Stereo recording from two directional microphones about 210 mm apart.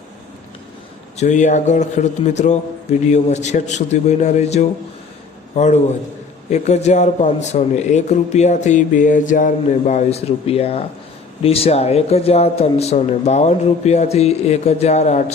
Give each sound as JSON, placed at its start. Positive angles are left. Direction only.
{"t": 1.1, "sound": "a man's voice", "side_deg": 35}